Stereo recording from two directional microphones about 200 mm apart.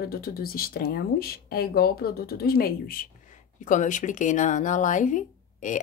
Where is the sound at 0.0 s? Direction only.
50° left (ahead or behind).